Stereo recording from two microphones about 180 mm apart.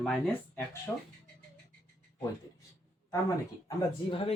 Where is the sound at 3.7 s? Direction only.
30° left (ahead or behind).